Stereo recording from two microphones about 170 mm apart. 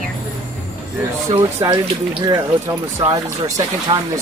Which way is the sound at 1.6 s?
30° right (ahead or behind).